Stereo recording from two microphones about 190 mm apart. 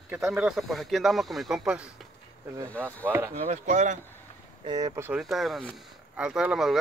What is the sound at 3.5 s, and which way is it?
Speech, 40° right (ahead or behind).